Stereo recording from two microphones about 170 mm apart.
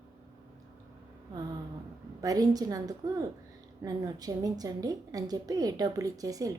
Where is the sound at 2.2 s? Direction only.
20° right (ahead or behind).